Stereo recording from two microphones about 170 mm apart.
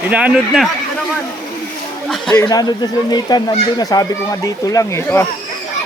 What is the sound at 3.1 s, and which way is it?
Speech, 25° left (ahead or behind).